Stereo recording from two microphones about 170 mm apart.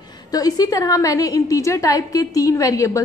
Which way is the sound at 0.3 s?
20° left (ahead or behind).